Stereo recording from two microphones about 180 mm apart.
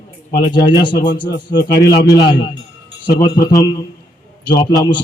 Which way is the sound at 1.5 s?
70° left (ahead or behind).